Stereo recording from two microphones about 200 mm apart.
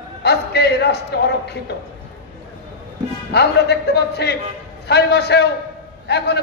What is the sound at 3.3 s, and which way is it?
A man's voice, 55° left (ahead or behind).